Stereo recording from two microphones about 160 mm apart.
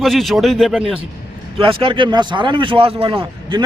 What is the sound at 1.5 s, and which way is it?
Speech, 35° right (ahead or behind).